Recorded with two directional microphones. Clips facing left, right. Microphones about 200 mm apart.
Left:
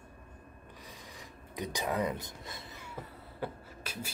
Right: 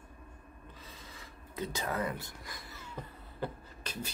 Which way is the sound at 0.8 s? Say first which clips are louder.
Left 2 dB; 15° left (ahead or behind).